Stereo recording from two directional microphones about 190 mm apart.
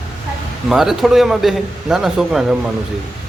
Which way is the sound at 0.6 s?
Centre (ahead or behind).